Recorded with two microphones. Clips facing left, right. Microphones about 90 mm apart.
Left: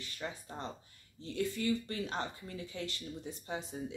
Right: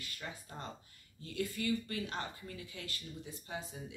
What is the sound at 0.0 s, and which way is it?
Speech, 25° left (ahead or behind).